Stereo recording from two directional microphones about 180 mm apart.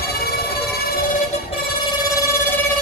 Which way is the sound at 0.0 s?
60° left (ahead or behind).